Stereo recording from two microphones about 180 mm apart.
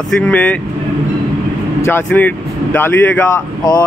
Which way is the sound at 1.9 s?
10° left (ahead or behind).